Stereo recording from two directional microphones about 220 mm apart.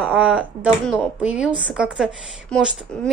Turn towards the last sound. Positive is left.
turn(degrees=0)  # may be behind; listen again after turning